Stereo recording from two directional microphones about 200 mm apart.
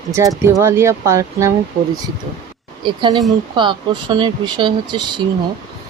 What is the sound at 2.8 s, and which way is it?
Speech, 25° right (ahead or behind).